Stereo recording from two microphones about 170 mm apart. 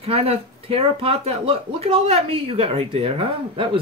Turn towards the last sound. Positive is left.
turn(degrees=-35)  # may be behind; listen again after turning